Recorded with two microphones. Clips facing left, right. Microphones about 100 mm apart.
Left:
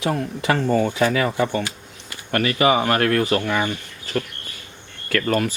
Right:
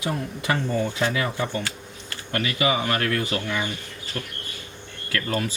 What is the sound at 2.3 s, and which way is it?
Speech, 55° left (ahead or behind).